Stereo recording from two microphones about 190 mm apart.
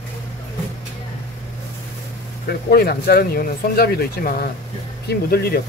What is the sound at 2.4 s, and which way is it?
Speech, 55° left (ahead or behind).